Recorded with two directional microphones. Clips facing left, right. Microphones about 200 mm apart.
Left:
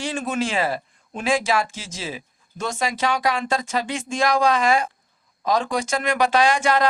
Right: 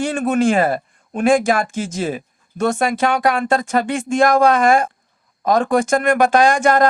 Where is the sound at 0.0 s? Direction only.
55° right (ahead or behind).